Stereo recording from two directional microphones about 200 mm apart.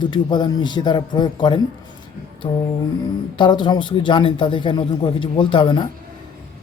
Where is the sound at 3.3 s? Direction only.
25° left (ahead or behind).